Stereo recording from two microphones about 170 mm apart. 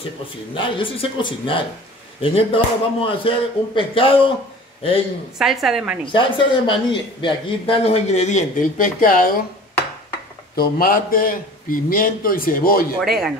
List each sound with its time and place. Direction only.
0.6 s a man's voice: 30° left (ahead or behind)
5.4 s a woman's voice: centre (ahead or behind)
6.1 s a man's voice: 30° left (ahead or behind); by 9.3 s 55° left (ahead or behind)
10.5 s a man's voice: 65° left (ahead or behind)
13.0 s a woman's voice: centre (ahead or behind)